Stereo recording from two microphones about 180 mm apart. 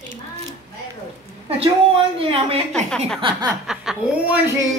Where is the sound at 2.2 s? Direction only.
30° right (ahead or behind).